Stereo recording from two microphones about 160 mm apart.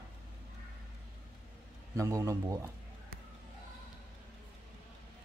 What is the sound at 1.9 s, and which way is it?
Speech, 20° right (ahead or behind).